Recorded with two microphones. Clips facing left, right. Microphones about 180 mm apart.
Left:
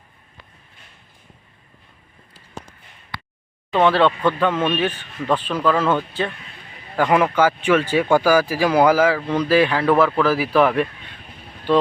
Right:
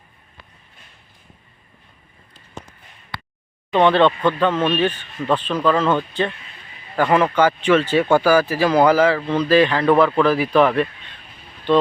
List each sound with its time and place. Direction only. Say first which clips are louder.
3.7 s speech: right 2 dB; 5° left (ahead or behind)
7.1 s speech: right 1 dB; 10° left (ahead or behind)